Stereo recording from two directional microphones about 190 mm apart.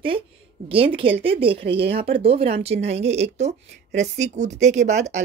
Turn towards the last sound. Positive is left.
turn(degrees=-40)  # may be behind; listen again after turning